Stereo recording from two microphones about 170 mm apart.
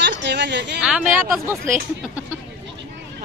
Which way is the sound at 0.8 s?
5° right (ahead or behind).